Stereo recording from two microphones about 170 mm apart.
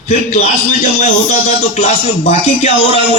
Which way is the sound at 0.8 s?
55° left (ahead or behind).